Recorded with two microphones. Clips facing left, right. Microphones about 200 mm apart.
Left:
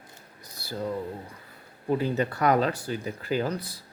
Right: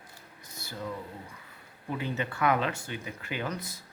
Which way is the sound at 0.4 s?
35° left (ahead or behind).